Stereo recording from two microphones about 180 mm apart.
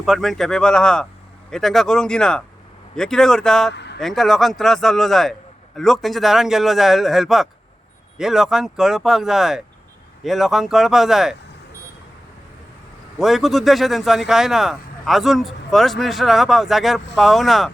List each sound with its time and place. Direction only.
0.0 s speech: centre (ahead or behind)
3.8 s a sound: 70° left (ahead or behind)
4.0 s speech: centre (ahead or behind)
13.1 s speech: centre (ahead or behind)